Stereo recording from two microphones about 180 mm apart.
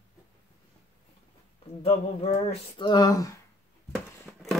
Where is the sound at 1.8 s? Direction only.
30° left (ahead or behind).